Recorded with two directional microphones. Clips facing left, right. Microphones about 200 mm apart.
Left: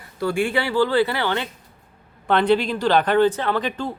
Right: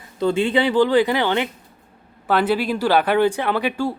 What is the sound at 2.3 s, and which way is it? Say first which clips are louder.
Speech: left 1 dB; 5° right (ahead or behind).